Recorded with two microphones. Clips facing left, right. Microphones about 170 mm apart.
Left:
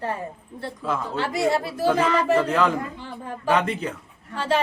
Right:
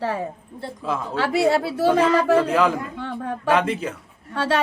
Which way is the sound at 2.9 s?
65° right (ahead or behind).